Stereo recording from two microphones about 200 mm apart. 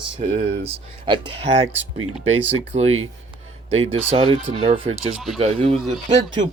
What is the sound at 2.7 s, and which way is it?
Speech, 30° right (ahead or behind).